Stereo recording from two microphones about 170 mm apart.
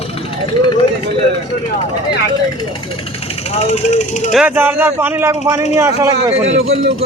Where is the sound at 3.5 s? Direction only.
40° left (ahead or behind).